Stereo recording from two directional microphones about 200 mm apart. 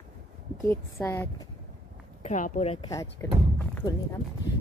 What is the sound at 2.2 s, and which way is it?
Speech, 35° left (ahead or behind).